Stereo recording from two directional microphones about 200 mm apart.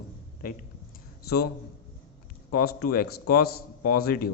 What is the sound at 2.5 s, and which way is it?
Speech, 50° left (ahead or behind).